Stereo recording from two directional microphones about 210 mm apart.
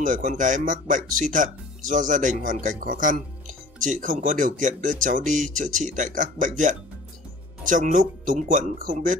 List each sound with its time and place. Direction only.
0.0 s speech: 35° right (ahead or behind)